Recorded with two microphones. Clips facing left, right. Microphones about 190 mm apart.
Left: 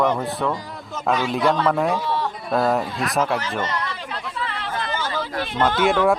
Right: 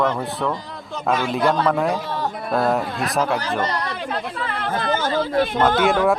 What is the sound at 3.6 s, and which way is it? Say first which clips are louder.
Speech: right 2 dB; 35° right (ahead or behind).